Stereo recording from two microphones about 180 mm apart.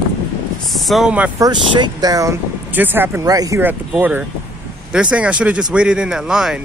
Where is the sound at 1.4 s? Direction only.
25° right (ahead or behind).